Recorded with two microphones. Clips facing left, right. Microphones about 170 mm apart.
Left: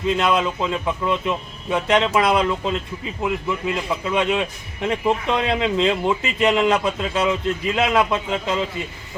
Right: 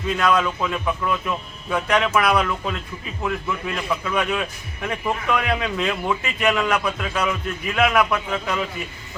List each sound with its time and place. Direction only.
0.1 s a man's voice: 25° left (ahead or behind)